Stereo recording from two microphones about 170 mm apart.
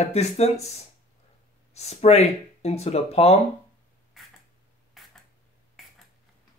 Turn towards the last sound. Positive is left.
turn(degrees=0)  # may be behind; listen again after turning